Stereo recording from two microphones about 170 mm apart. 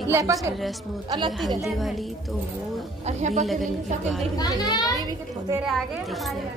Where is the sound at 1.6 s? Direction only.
Centre (ahead or behind).